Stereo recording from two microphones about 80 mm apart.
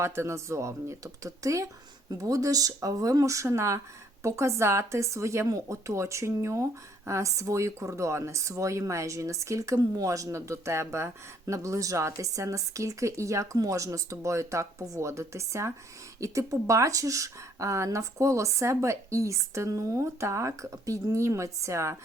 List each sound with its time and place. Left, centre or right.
0.0 s speech: right